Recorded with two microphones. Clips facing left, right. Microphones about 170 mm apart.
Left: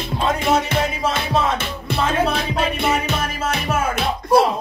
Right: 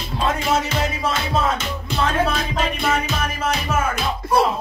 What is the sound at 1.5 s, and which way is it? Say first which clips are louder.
Music: left 1 dB; 60° left (ahead or behind).